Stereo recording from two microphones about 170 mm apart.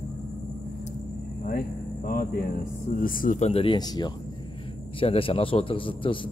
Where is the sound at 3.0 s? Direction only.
55° left (ahead or behind).